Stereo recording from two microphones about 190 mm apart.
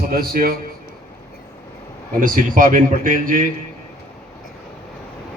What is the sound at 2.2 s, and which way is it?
A man's voice, 45° right (ahead or behind).